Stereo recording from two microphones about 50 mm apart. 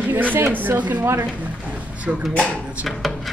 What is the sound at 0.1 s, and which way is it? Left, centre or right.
Speech, right.